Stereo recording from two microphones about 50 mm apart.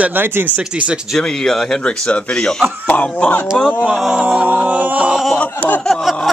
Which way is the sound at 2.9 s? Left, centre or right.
Left.